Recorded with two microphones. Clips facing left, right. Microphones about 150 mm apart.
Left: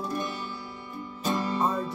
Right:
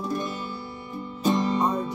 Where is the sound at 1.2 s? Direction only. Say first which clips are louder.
Right 4 dB; 15° right (ahead or behind).